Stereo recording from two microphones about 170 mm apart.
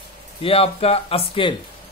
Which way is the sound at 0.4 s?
35° left (ahead or behind).